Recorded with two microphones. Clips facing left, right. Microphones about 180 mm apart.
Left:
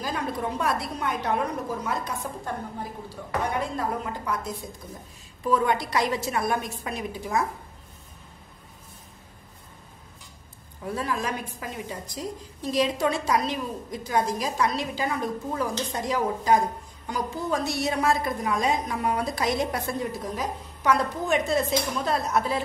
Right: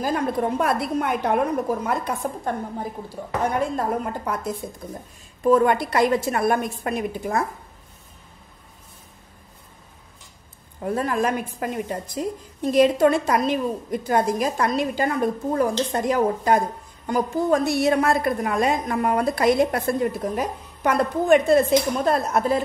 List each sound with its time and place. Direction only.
0.0 s a woman's voice: 50° right (ahead or behind)
10.8 s a woman's voice: 55° right (ahead or behind)